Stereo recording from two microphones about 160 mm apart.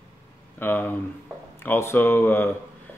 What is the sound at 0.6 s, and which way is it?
Speech, 10° left (ahead or behind).